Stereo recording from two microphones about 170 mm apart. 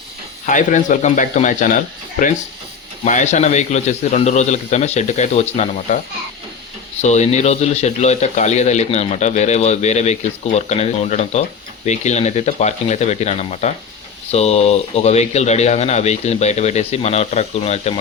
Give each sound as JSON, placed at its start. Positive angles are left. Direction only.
{"t": 0.4, "sound": "a man's voice", "side_deg": 50}
{"t": 7.0, "sound": "speech", "side_deg": 40}